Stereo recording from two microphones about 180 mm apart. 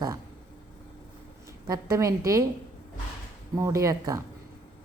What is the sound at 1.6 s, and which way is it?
Speech, 20° right (ahead or behind).